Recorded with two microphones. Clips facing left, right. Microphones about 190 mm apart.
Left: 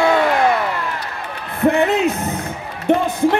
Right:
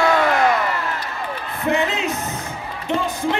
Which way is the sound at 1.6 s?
55° left (ahead or behind).